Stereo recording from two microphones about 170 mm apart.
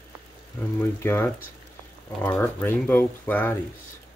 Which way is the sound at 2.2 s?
5° left (ahead or behind).